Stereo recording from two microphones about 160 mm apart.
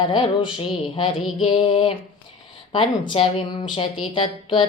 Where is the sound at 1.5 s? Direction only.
35° left (ahead or behind).